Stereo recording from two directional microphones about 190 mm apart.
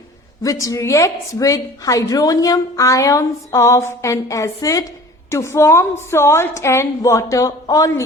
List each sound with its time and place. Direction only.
0.4 s a woman's voice: 15° left (ahead or behind)